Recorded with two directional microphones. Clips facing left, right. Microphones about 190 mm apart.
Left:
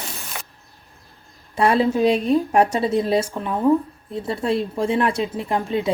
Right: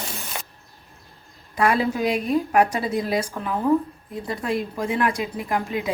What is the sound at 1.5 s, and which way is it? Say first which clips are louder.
A woman's voice: left 3 dB; 30° left (ahead or behind).